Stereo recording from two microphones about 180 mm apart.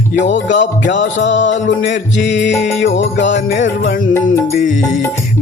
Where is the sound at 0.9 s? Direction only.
85° left.